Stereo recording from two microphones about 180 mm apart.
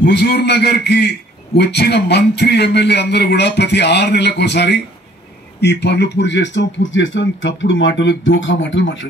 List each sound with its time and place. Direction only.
0.0 s a man's voice: 70° left (ahead or behind); by 9.0 s 90° left